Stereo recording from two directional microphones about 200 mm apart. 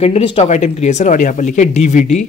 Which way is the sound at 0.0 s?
30° left (ahead or behind).